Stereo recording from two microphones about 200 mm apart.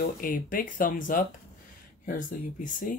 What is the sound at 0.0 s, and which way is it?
Speech, 45° left (ahead or behind).